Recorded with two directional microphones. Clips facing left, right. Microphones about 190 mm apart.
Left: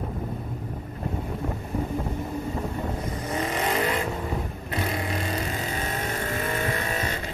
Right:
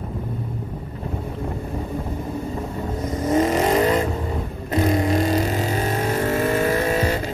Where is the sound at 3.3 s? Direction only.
40° right (ahead or behind).